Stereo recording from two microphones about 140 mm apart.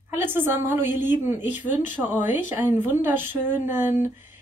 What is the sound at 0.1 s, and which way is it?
A woman's voice, 15° right (ahead or behind).